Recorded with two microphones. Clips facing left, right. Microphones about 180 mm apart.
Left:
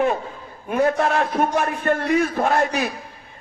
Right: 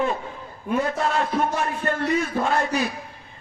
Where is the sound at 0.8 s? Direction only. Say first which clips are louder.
Left 5 dB; 55° left (ahead or behind).